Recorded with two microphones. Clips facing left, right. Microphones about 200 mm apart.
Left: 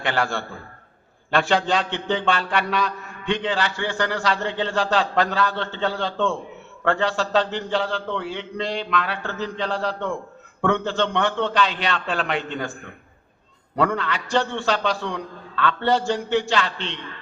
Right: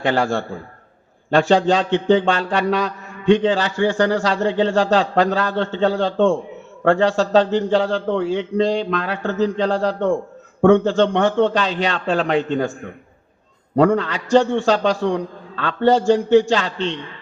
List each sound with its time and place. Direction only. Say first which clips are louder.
0.0 s a man's voice: right 6 dB; 40° right (ahead or behind)
13.7 s a man's voice: right 7 dB; 40° right (ahead or behind)